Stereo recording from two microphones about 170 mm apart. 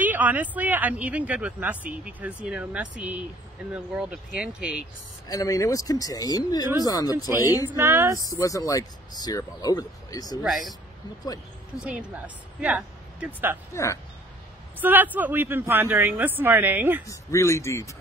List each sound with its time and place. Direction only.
0.0 s speech: 10° right (ahead or behind)
5.3 s speech: 20° left (ahead or behind)
7.2 s speech: 15° right (ahead or behind)
8.2 s speech: 20° left (ahead or behind)
10.4 s speech: centre (ahead or behind)
11.8 s speech: 10° right (ahead or behind)
14.8 s speech: 10° right (ahead or behind)
17.0 s speech: 20° left (ahead or behind)